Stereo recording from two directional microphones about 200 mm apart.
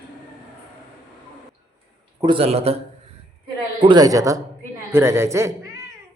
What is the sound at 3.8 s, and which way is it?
Speech, 20° right (ahead or behind).